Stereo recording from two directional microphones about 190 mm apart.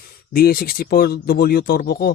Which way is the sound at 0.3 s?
50° left (ahead or behind).